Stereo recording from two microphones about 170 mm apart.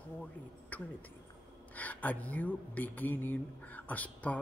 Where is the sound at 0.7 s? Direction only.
10° left (ahead or behind).